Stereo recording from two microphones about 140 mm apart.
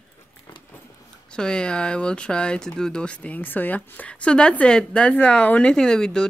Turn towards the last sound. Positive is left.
turn(degrees=5)  # may be behind; listen again after turning